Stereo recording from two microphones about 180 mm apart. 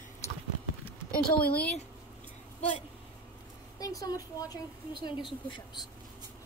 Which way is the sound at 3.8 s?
20° left (ahead or behind).